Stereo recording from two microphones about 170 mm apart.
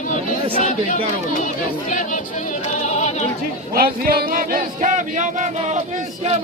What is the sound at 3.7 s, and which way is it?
Speech, 60° right (ahead or behind).